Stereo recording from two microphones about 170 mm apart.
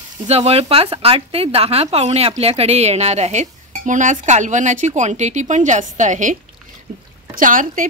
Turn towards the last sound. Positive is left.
turn(degrees=-50)  # may be behind; listen again after turning